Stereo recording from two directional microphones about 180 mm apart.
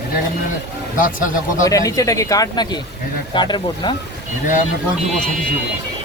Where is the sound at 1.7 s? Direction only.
20° left (ahead or behind).